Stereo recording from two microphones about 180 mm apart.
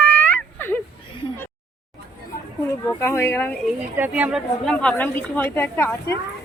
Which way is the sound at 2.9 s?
15° left (ahead or behind).